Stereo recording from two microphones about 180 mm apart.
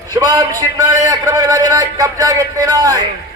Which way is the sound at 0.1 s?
20° right (ahead or behind).